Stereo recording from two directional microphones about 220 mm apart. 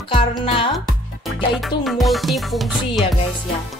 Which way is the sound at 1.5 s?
Centre (ahead or behind).